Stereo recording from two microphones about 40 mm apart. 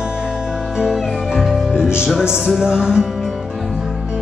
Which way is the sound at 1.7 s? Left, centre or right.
Right.